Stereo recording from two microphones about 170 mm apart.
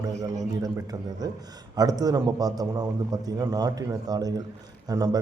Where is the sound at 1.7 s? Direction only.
20° right (ahead or behind).